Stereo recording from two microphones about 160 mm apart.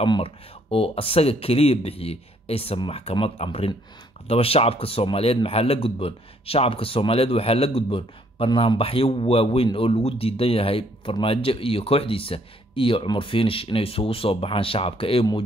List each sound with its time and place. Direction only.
0.0 s a man's voice: 35° left (ahead or behind)